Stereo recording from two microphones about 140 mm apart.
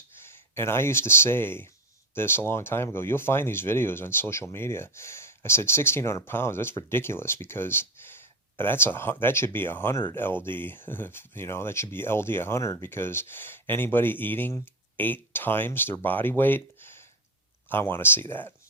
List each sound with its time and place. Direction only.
0.3 s speech: 15° left (ahead or behind)